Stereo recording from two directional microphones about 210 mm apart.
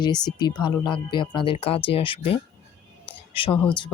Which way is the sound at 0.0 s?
20° left (ahead or behind).